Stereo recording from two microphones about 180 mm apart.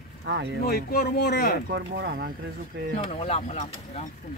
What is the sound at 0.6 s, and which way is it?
Speech, 55° left (ahead or behind).